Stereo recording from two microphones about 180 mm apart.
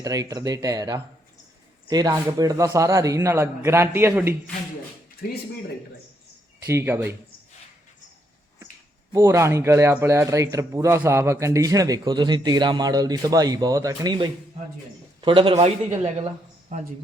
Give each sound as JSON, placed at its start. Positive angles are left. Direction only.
{"t": 0.0, "sound": "a man's voice", "side_deg": -20}
{"t": 5.2, "sound": "speech", "side_deg": 60}
{"t": 6.7, "sound": "a man's voice", "side_deg": -15}
{"t": 9.1, "sound": "a man's voice", "side_deg": -15}